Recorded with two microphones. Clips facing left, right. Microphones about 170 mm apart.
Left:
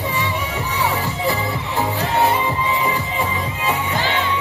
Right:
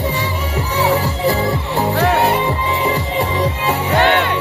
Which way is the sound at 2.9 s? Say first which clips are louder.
Right 4 dB; 40° right (ahead or behind).